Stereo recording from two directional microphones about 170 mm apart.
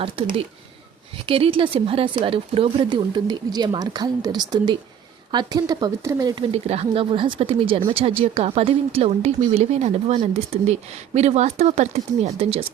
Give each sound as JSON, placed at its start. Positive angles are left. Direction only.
{"t": 0.0, "sound": "speech", "side_deg": -30}
{"t": 6.5, "sound": "speech", "side_deg": -35}